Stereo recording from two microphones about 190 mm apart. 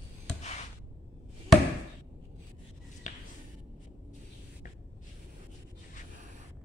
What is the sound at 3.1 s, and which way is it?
Finger snapping, 40° left (ahead or behind).